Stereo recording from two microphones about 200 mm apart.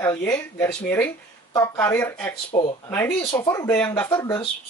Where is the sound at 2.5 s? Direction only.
25° left (ahead or behind).